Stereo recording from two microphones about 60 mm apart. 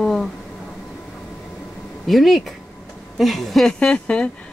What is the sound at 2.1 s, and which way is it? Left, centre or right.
A woman's voice, centre.